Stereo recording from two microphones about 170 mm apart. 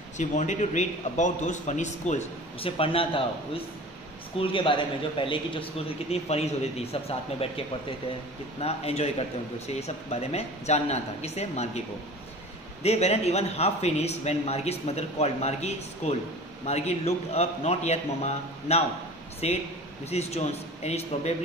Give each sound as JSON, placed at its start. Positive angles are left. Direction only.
{"t": 0.2, "sound": "a man's voice", "side_deg": 45}
{"t": 12.8, "sound": "a man's voice", "side_deg": 40}